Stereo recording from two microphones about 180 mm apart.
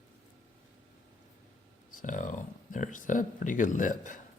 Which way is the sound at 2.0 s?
45° left (ahead or behind).